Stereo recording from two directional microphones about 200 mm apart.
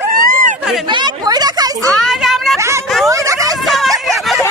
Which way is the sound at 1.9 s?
Centre (ahead or behind).